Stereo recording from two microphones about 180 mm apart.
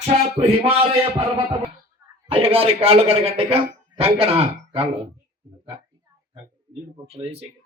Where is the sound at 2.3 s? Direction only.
30° right (ahead or behind).